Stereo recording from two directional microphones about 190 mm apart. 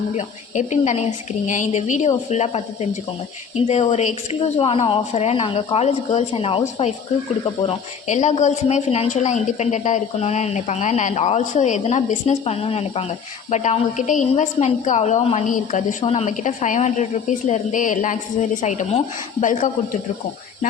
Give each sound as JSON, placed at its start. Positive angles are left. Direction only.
{"t": 0.2, "sound": "a woman's voice", "side_deg": 40}
{"t": 7.6, "sound": "a woman's voice", "side_deg": 35}